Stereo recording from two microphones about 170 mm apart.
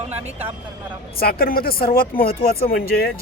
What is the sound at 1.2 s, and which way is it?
Speech, 60° left (ahead or behind).